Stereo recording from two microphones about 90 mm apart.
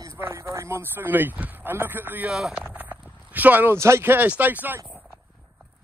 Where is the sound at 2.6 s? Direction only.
20° right (ahead or behind).